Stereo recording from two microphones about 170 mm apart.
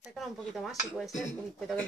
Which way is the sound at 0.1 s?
5° left (ahead or behind).